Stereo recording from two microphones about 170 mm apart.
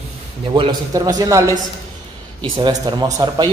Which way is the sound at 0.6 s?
25° right (ahead or behind).